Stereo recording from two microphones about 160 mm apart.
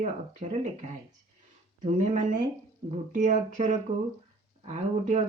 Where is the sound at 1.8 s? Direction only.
50° right (ahead or behind).